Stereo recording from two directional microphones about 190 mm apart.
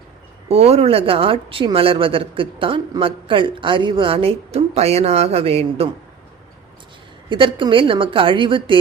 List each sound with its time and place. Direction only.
0.4 s a woman's voice: 30° right (ahead or behind)
7.3 s a woman's voice: 25° right (ahead or behind)